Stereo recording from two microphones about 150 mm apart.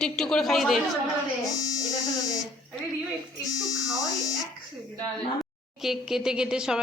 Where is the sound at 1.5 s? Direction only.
25° left (ahead or behind).